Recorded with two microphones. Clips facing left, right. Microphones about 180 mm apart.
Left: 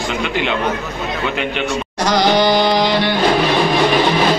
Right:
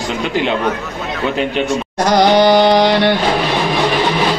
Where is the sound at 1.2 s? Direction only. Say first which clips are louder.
Right 5 dB; 35° right (ahead or behind); by 3.1 s 65° right (ahead or behind).